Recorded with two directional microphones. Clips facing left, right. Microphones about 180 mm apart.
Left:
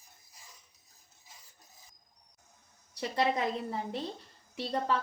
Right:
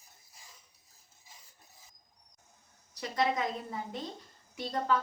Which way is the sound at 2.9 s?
30° left (ahead or behind).